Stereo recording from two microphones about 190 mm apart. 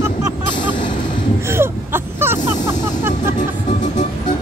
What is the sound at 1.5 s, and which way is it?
Whimper, 10° right (ahead or behind).